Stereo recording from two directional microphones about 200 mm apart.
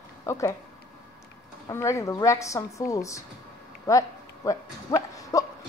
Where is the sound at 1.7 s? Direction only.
15° left (ahead or behind).